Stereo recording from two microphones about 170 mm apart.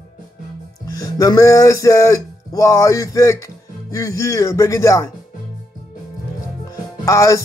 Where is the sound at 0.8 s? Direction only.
20° left (ahead or behind).